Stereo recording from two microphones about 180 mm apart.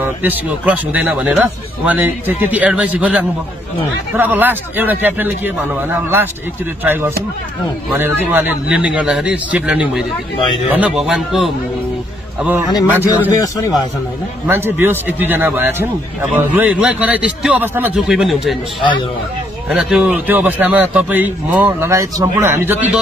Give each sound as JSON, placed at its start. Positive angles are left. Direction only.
{"t": 0.0, "sound": "a man's voice", "side_deg": -10}
{"t": 13.3, "sound": "a man's voice", "side_deg": 20}
{"t": 14.5, "sound": "a man's voice", "side_deg": -10}
{"t": 19.7, "sound": "a man's voice", "side_deg": -5}